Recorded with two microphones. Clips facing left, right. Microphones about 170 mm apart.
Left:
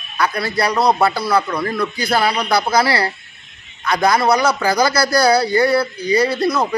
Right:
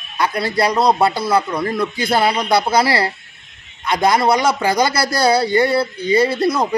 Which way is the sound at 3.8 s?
25° right (ahead or behind).